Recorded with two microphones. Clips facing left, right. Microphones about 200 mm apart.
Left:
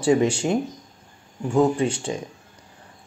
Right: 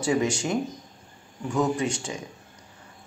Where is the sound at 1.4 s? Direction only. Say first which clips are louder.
Left 5 dB; 30° left (ahead or behind).